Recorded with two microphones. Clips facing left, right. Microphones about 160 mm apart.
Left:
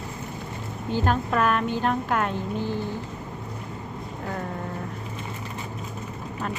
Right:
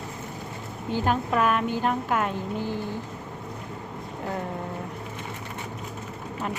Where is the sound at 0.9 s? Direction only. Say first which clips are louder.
Even; 15° right (ahead or behind).